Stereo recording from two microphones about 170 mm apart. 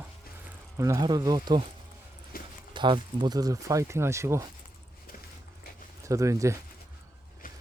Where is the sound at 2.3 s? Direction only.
60° left (ahead or behind).